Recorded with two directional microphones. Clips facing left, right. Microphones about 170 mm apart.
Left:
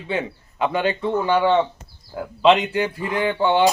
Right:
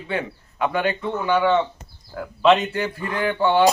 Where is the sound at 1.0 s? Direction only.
10° left (ahead or behind).